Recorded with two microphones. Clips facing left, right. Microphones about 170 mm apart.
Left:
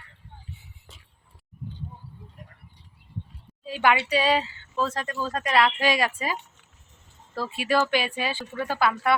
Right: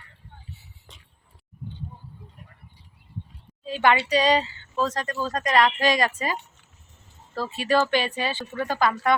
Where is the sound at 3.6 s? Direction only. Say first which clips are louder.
Right 1 dB; 5° left (ahead or behind).